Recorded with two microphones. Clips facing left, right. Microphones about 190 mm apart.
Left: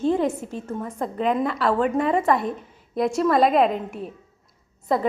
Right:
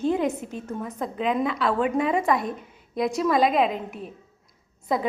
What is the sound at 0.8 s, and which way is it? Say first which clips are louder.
A woman's voice: left 3 dB; 5° right (ahead or behind).